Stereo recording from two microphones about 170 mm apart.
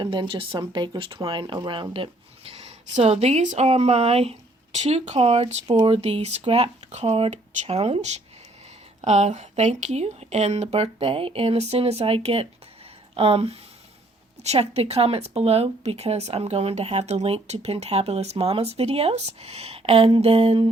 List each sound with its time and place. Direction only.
0.0 s speech: 30° right (ahead or behind)
5.6 s speech: 25° right (ahead or behind)
5.9 s speech: 35° right (ahead or behind)